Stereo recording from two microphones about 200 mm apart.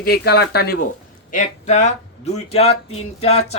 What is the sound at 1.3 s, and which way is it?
Speech, 35° left (ahead or behind).